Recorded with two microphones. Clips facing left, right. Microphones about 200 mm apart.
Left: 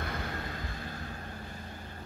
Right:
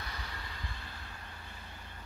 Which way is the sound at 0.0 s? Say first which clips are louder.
Left 9 dB; 50° left (ahead or behind).